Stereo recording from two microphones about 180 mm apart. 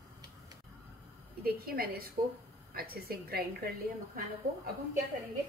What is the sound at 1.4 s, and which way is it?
A woman's voice, 55° right (ahead or behind).